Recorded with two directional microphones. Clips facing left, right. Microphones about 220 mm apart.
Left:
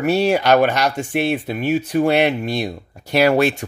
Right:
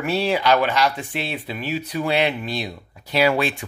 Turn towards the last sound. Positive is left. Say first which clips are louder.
# left 5 dB
turn(degrees=45)  # may be behind; listen again after turning